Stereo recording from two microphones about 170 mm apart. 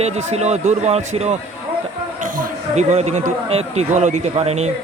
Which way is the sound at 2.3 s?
40° right (ahead or behind).